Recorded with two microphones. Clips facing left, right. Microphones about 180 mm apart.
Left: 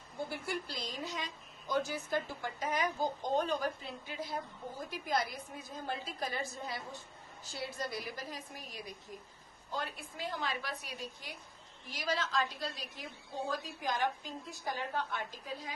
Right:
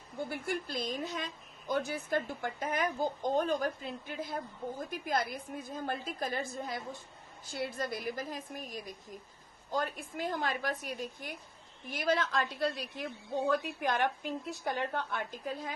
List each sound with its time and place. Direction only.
0.3 s a woman's voice: 55° right (ahead or behind)